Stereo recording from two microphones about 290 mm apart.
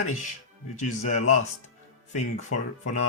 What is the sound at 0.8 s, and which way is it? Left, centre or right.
Speech, left.